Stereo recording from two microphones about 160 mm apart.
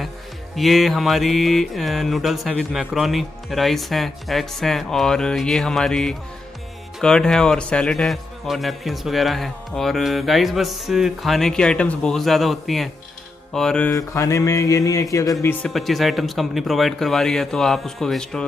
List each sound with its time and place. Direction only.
0.6 s a man's voice: centre (ahead or behind)
13.9 s speech: 20° left (ahead or behind)
15.6 s a man's voice: centre (ahead or behind)